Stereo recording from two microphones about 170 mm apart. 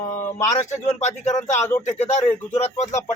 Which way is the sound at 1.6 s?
15° left (ahead or behind).